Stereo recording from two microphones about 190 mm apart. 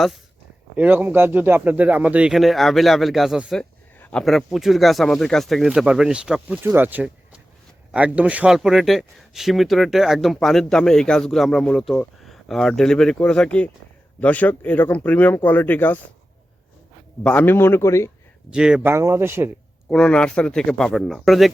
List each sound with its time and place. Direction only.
0.8 s speech: 10° right (ahead or behind); by 16.0 s 10° left (ahead or behind)
17.2 s speech: 10° left (ahead or behind)
18.5 s speech: 5° right (ahead or behind)
19.9 s speech: 5° left (ahead or behind)